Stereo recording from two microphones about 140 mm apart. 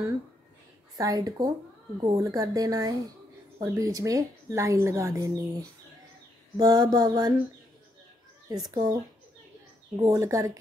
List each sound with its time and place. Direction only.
0.9 s speech: 25° right (ahead or behind)
6.5 s speech: 25° right (ahead or behind)
8.5 s speech: 25° right (ahead or behind)